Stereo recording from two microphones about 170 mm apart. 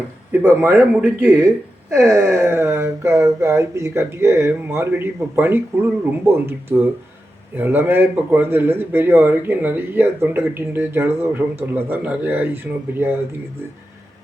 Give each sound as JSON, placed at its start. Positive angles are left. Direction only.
{"t": 0.3, "sound": "speech", "side_deg": -10}